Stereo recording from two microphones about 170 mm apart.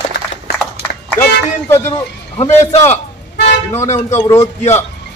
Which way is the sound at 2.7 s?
40° left (ahead or behind).